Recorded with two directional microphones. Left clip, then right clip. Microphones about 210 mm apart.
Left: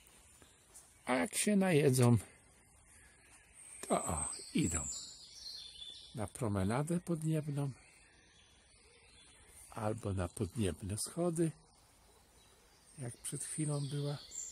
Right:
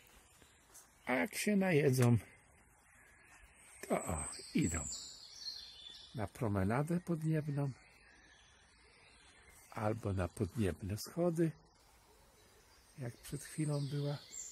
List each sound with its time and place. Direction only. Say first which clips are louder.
1.0 s speech: left 1 dB; 15° left (ahead or behind)
3.8 s speech: left 2 dB; 15° left (ahead or behind)
6.1 s speech: even; 5° left (ahead or behind)
9.8 s speech: right 1 dB; centre (ahead or behind)
13.0 s speech: left 1 dB; centre (ahead or behind)